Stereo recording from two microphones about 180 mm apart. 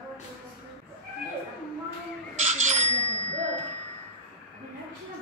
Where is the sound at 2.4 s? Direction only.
40° right (ahead or behind).